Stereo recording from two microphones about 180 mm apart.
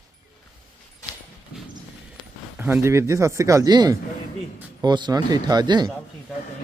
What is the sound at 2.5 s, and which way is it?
Speech, 10° right (ahead or behind).